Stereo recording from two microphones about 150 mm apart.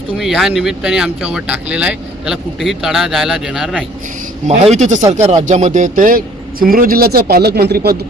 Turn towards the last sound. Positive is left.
turn(degrees=-90)